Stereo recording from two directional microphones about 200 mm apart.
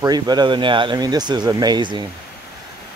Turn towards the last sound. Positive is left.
turn(degrees=-20)  # may be behind; listen again after turning